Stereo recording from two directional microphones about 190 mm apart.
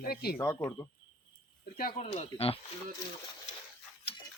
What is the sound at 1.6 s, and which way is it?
Speech, 50° left (ahead or behind).